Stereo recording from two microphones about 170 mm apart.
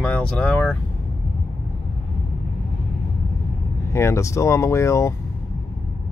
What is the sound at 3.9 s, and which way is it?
Speech, 15° left (ahead or behind).